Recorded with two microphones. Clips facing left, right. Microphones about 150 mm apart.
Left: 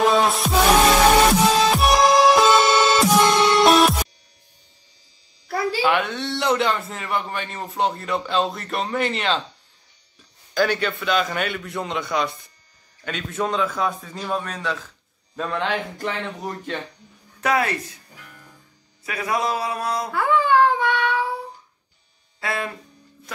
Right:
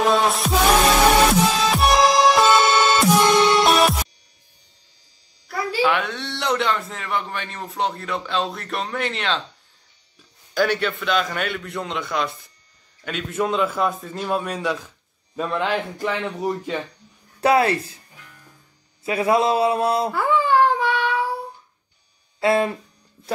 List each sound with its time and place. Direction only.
0.0 s music: centre (ahead or behind)
5.5 s a sound: 30° left (ahead or behind)
5.9 s a man's voice: centre (ahead or behind)
10.5 s a man's voice: centre (ahead or behind)
17.4 s speech: 30° right (ahead or behind)
19.0 s a man's voice: 25° right (ahead or behind)
20.1 s baby cry: 5° right (ahead or behind)
22.4 s speech: 25° right (ahead or behind)